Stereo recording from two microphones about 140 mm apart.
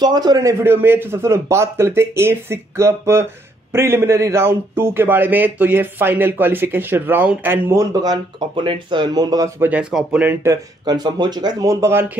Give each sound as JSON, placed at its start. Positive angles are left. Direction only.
{"t": 0.0, "sound": "a man's voice", "side_deg": -30}
{"t": 9.6, "sound": "a man's voice", "side_deg": -10}
{"t": 10.4, "sound": "speech", "side_deg": -25}